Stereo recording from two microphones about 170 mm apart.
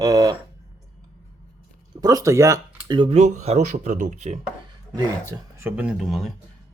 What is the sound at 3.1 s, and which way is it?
Speech, 40° right (ahead or behind).